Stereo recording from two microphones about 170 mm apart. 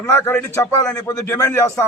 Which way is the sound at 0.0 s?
15° left (ahead or behind).